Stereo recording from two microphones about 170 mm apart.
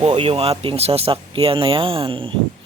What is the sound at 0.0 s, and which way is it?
A man's voice, 35° right (ahead or behind).